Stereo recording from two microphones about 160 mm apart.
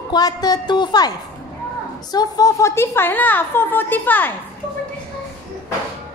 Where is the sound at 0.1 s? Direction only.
25° left (ahead or behind).